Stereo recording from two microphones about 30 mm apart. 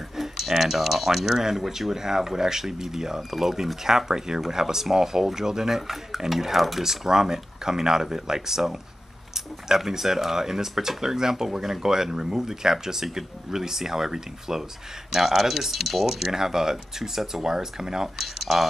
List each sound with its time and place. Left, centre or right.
0.2 s speech: centre
6.8 s speech: centre
9.8 s speech: centre
16.3 s speech: centre